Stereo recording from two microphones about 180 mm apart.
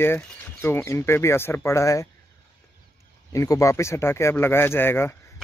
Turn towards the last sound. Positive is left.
turn(degrees=15)  # may be behind; listen again after turning